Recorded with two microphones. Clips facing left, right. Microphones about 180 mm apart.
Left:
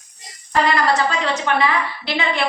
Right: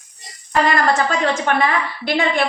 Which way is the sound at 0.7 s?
50° right (ahead or behind).